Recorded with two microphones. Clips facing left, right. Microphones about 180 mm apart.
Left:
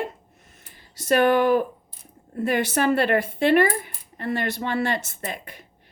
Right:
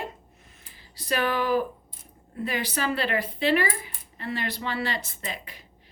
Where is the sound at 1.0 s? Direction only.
50° left (ahead or behind).